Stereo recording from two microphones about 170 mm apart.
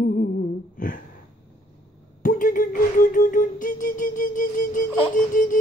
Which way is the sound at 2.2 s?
50° left (ahead or behind).